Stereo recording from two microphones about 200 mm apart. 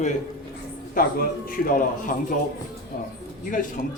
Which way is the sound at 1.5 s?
45° left (ahead or behind).